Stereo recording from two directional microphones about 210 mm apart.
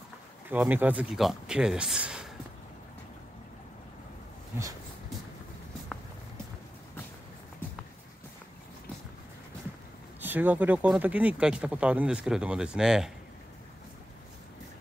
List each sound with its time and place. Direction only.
0.5 s speech: 10° right (ahead or behind)
10.2 s speech: 10° right (ahead or behind)